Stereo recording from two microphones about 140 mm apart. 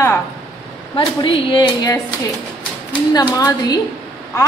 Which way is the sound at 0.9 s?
35° left (ahead or behind).